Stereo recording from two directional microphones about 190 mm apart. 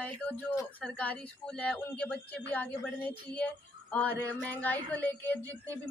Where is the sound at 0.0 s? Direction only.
5° left (ahead or behind).